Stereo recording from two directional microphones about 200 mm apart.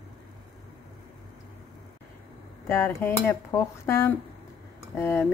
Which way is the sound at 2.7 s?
10° left (ahead or behind).